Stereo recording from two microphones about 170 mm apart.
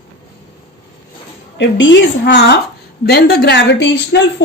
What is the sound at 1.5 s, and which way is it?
A woman's voice, 90° left.